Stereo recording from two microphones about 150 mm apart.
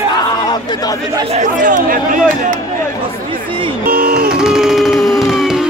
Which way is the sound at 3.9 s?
85° right.